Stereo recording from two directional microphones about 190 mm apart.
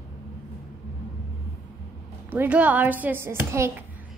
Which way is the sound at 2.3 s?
10° right (ahead or behind).